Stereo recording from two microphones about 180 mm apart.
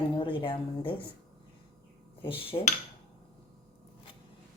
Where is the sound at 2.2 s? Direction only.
30° left (ahead or behind).